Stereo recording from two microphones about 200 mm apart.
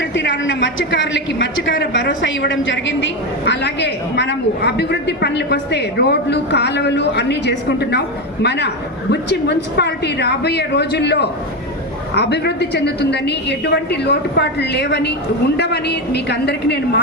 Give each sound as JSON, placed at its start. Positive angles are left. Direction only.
{"t": 0.2, "sound": "a woman's voice", "side_deg": 65}